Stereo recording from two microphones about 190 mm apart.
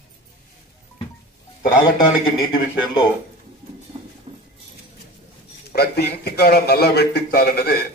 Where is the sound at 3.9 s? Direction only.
25° right (ahead or behind).